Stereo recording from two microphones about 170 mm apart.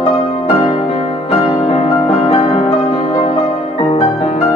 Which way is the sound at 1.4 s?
35° left (ahead or behind).